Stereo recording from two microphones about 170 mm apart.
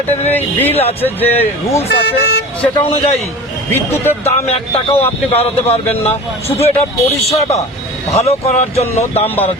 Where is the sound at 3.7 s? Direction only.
15° left (ahead or behind).